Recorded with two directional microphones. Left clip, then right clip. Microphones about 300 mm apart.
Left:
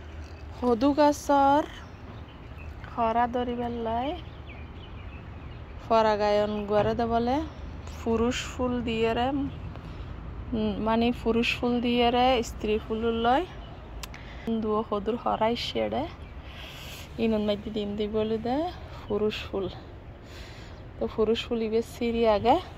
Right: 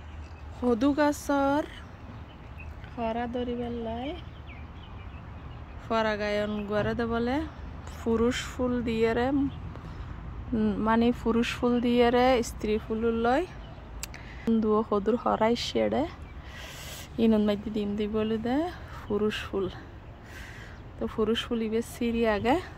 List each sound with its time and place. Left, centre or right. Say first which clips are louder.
0.7 s speech: left 3 dB; centre
3.0 s speech: left 6 dB; centre
5.9 s speech: left 5 dB; centre
10.5 s speech: right 1 dB; right
14.5 s speech: right 2 dB; right
21.0 s speech: left 2 dB; centre